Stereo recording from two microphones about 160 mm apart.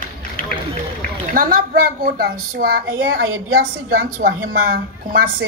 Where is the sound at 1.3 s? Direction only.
65° right (ahead or behind).